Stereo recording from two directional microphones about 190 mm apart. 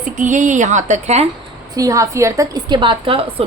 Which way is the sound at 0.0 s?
40° right (ahead or behind).